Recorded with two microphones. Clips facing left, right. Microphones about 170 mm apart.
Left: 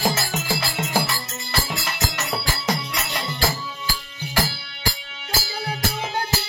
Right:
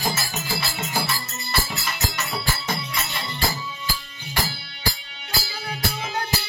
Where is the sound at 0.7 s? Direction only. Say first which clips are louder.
Left 3 dB; 45° left (ahead or behind).